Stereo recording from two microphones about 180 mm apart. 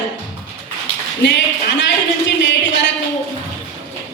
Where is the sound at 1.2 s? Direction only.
80° left.